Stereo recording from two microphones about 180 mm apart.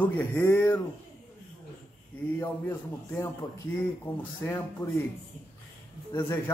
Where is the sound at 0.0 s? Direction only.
15° left (ahead or behind).